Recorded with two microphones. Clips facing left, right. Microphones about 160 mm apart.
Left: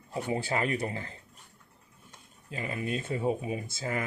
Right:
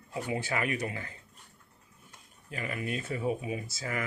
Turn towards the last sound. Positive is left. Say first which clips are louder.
# left 2 dB
turn(degrees=30)  # may be behind; listen again after turning